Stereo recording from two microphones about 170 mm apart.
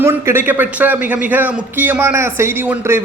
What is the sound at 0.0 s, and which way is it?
A man's voice, 15° right (ahead or behind).